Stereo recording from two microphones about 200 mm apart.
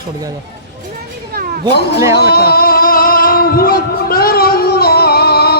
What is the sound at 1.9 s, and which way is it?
Speech, 15° right (ahead or behind).